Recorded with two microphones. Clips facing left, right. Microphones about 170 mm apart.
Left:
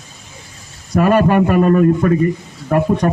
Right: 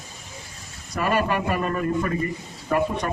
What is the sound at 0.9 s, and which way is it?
A man's voice, 50° left (ahead or behind).